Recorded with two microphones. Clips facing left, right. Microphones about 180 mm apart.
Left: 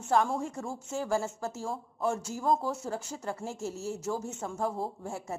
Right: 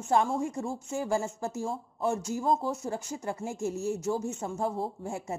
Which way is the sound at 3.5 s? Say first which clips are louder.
Right 5 dB; 5° left (ahead or behind).